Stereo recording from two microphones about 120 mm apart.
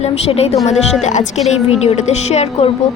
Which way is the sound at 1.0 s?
80° left.